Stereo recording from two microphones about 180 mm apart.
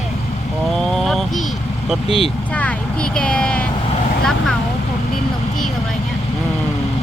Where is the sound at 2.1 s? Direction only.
30° left (ahead or behind).